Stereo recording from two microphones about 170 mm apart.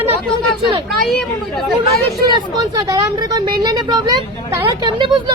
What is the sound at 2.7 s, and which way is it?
Speech, 20° right (ahead or behind).